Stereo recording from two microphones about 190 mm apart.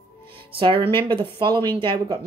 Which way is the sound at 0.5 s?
30° right (ahead or behind).